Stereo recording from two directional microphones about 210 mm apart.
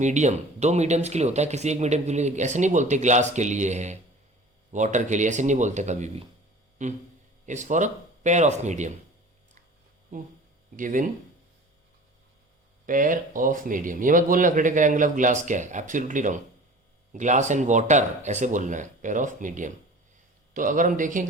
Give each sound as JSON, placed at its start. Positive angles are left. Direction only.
{"t": 0.0, "sound": "speech", "side_deg": -35}
{"t": 10.1, "sound": "speech", "side_deg": -40}
{"t": 12.8, "sound": "speech", "side_deg": -40}